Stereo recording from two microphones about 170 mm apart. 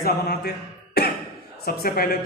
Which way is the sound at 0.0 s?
65° left (ahead or behind).